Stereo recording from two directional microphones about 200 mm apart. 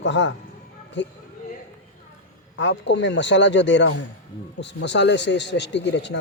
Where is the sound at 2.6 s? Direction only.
65° left (ahead or behind).